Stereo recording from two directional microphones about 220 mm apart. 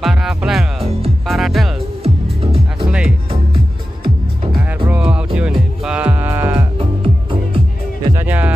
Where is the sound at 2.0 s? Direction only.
25° right (ahead or behind).